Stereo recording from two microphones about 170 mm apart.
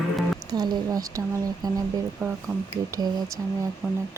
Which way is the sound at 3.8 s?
10° right (ahead or behind).